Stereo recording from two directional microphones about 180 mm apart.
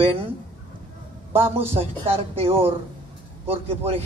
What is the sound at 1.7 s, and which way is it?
A man's voice, 35° right (ahead or behind).